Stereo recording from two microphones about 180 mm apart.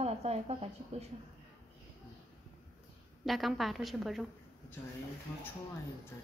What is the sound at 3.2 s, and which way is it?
A woman's voice, centre (ahead or behind).